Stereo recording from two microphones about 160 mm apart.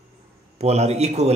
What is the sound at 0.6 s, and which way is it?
Speech, 40° right (ahead or behind).